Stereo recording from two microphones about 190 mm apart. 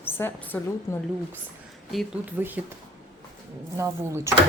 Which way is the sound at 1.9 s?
Centre (ahead or behind).